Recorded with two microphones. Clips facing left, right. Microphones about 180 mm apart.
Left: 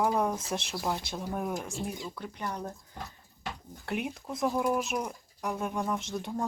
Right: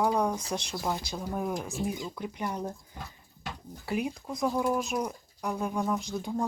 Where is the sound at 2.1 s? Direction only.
15° right (ahead or behind).